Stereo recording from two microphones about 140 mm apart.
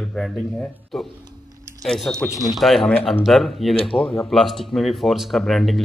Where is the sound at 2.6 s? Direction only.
Centre (ahead or behind).